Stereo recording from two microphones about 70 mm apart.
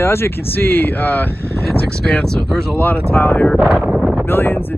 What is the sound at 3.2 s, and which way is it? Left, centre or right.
Speech, left.